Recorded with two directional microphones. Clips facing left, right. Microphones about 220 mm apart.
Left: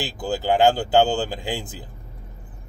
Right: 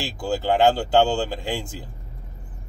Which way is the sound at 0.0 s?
5° left (ahead or behind).